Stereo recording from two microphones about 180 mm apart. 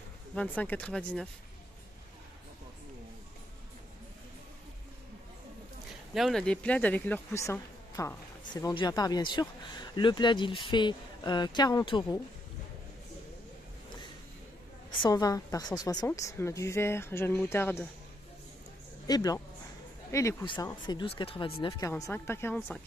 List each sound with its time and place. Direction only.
0.3 s a woman's voice: 5° left (ahead or behind)
6.1 s a woman's voice: centre (ahead or behind); by 12.2 s 25° left (ahead or behind)
14.9 s a woman's voice: 25° left (ahead or behind)
19.0 s speech: 20° left (ahead or behind)
21.6 s a woman's voice: 20° left (ahead or behind)